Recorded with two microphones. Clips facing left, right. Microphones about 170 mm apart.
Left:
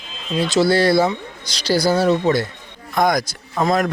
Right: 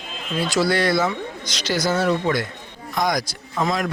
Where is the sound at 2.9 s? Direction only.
50° left (ahead or behind).